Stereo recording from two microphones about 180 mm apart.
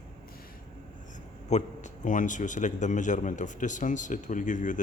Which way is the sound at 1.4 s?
40° left (ahead or behind).